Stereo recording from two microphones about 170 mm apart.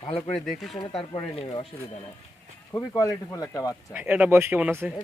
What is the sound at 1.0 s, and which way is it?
Speech, 35° left (ahead or behind).